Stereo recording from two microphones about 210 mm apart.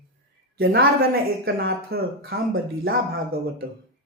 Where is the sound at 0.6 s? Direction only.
55° right (ahead or behind).